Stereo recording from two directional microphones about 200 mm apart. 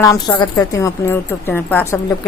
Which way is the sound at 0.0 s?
15° left (ahead or behind).